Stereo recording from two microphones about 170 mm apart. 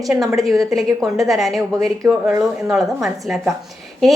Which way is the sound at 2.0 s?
15° right (ahead or behind).